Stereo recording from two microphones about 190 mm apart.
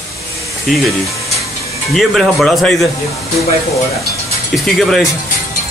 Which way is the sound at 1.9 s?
Centre (ahead or behind).